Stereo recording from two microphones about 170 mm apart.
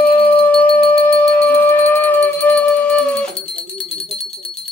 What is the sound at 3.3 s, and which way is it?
Music, 35° left (ahead or behind).